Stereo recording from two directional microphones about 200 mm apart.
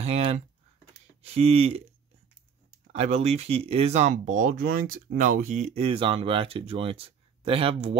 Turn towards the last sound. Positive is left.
turn(degrees=-30)  # may be behind; listen again after turning